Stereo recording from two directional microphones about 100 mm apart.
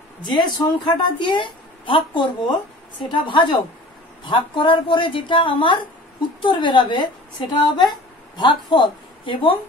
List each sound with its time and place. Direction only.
0.2 s a woman's voice: 50° left (ahead or behind)